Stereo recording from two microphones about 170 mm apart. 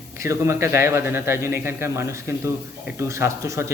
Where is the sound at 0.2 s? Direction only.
15° right (ahead or behind).